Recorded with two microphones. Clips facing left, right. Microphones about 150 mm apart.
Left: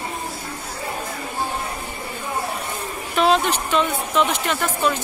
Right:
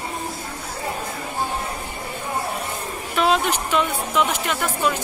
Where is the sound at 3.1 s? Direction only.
5° right (ahead or behind).